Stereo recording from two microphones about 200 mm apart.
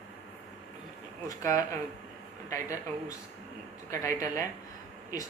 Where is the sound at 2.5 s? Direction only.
15° left (ahead or behind).